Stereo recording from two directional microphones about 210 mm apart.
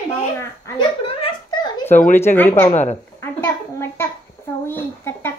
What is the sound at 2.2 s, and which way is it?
A child's voice, 10° left (ahead or behind).